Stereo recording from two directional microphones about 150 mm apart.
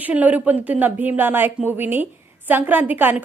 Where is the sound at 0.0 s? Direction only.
10° right (ahead or behind).